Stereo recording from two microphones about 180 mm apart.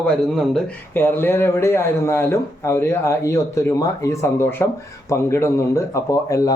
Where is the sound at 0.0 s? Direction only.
5° left (ahead or behind).